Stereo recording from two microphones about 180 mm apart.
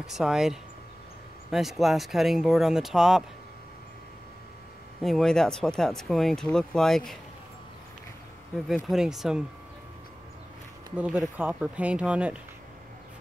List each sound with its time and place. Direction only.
0.0 s speech: 5° right (ahead or behind)
5.0 s speech: centre (ahead or behind)
8.6 s speech: centre (ahead or behind)
11.0 s speech: 5° right (ahead or behind)